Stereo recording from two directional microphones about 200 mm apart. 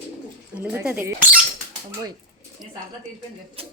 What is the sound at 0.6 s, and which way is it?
Speech, 10° right (ahead or behind).